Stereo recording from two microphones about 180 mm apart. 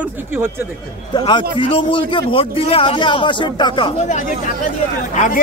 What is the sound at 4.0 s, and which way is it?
Speech, 45° left (ahead or behind).